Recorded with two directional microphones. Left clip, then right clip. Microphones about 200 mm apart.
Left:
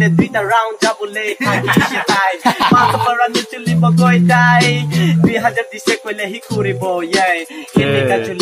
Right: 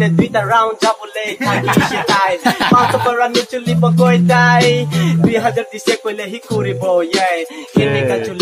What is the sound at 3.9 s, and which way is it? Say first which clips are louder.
Music: right 1 dB; centre (ahead or behind).